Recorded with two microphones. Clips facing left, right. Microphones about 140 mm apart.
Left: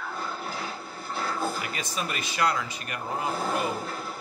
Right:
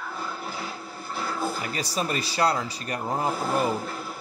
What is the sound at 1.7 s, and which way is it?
Speech, 35° right (ahead or behind).